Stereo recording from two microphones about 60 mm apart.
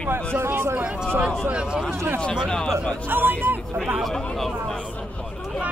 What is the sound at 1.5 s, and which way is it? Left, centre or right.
Speech, centre.